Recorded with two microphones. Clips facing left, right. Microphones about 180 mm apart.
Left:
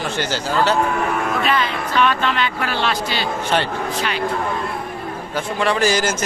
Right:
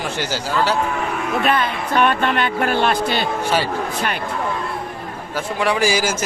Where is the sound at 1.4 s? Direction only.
55° right (ahead or behind).